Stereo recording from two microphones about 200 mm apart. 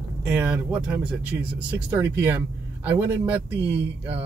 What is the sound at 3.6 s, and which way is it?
Speech, 60° right (ahead or behind).